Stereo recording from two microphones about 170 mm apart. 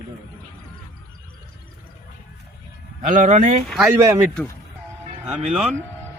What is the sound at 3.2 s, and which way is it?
Speech, 45° right (ahead or behind).